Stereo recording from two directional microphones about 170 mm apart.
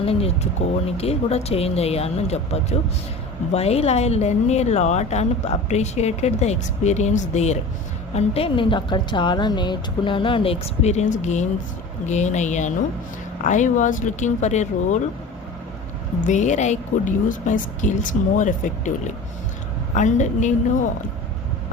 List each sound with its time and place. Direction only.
0.0 s vehicle: 35° left (ahead or behind)
0.9 s speech: 35° left (ahead or behind)
16.2 s speech: 45° left (ahead or behind)